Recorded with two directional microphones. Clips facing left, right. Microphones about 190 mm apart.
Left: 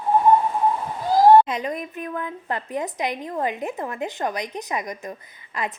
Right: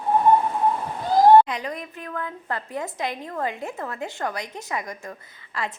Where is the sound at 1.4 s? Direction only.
20° left (ahead or behind).